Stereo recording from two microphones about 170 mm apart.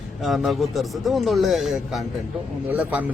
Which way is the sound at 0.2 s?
Centre (ahead or behind).